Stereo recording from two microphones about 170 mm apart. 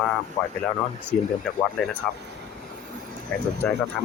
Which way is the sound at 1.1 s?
5° left (ahead or behind).